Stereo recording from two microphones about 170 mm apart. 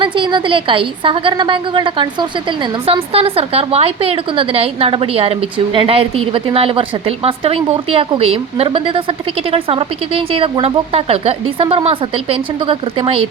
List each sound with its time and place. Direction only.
0.0 s a woman's voice: 30° right (ahead or behind)